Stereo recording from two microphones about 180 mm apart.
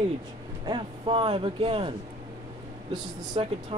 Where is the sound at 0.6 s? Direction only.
30° right (ahead or behind).